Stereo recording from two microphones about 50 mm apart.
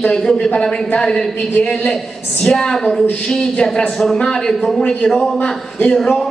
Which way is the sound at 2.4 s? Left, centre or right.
Centre.